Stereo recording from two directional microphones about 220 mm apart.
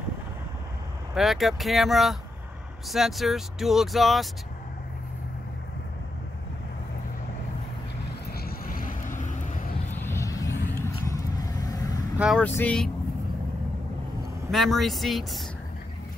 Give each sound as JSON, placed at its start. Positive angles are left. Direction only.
{"t": 1.1, "sound": "speech", "side_deg": 0}
{"t": 8.3, "sound": "vehicle", "side_deg": 45}
{"t": 10.0, "sound": "vehicle", "side_deg": 15}
{"t": 12.2, "sound": "speech", "side_deg": 0}
{"t": 14.5, "sound": "speech", "side_deg": 0}